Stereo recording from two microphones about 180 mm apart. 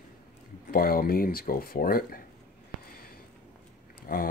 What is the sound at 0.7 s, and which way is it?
Speech, 55° left (ahead or behind).